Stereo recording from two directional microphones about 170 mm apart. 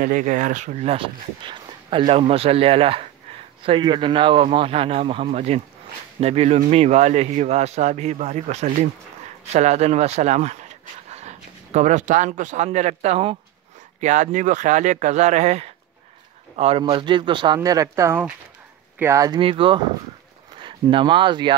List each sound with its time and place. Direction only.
0.0 s a man's voice: 50° right (ahead or behind); by 19.4 s 20° right (ahead or behind)
19.4 s speech: 30° right (ahead or behind)